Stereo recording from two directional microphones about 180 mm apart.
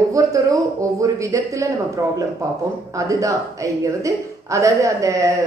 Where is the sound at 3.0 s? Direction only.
20° right (ahead or behind).